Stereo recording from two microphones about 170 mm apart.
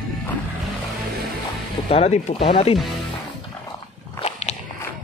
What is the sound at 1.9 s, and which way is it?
Speech, 40° left (ahead or behind).